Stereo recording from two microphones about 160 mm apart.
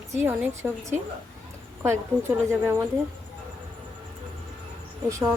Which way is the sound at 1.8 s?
15° right (ahead or behind).